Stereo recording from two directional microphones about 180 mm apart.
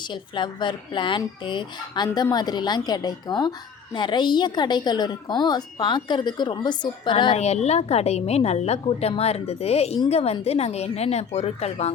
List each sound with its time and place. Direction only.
0.1 s speech: 25° left (ahead or behind)